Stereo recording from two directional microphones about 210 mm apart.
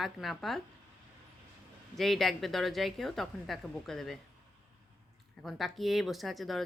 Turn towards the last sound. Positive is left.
turn(degrees=0)  # may be behind; listen again after turning